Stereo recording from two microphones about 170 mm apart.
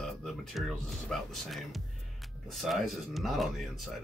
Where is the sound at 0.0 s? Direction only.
Centre (ahead or behind).